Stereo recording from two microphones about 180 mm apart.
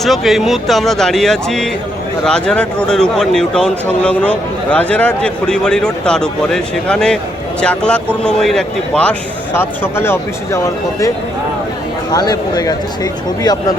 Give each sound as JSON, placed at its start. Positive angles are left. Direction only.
{"t": 0.0, "sound": "speech", "side_deg": 0}
{"t": 12.1, "sound": "speech", "side_deg": 20}